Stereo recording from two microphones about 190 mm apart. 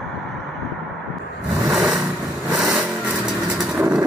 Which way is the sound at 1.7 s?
Centre (ahead or behind).